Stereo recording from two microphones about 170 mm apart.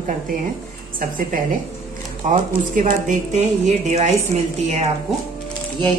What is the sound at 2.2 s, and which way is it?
Speech, 50° right (ahead or behind).